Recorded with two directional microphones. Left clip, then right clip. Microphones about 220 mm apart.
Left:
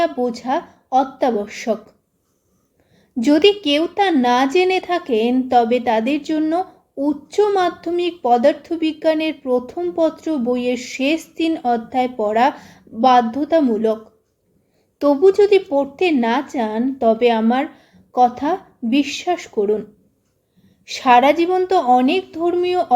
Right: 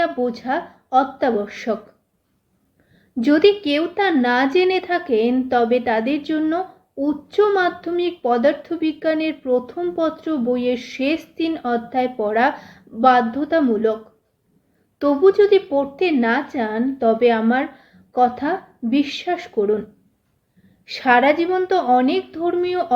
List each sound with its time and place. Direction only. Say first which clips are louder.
0.0 s a woman's voice: left 1 dB; 30° left (ahead or behind)
3.2 s a woman's voice: left 1 dB; 30° left (ahead or behind)
20.8 s a woman's voice: left 3 dB; 30° left (ahead or behind)